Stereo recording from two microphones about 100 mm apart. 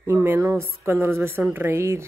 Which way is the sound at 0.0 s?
25° right (ahead or behind).